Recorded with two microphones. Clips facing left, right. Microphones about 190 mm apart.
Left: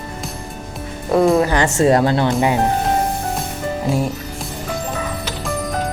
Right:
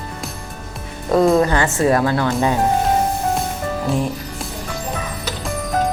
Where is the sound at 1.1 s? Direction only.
5° left (ahead or behind).